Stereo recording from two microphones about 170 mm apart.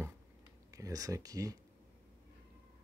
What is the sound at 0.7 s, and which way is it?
Speech, 20° right (ahead or behind).